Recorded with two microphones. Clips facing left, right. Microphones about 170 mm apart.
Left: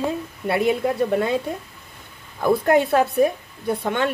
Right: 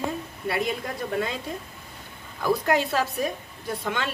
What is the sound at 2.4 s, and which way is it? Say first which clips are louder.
A woman's voice: left 6 dB; 55° left (ahead or behind).